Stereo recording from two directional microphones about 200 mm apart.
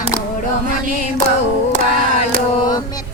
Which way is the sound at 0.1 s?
15° left (ahead or behind).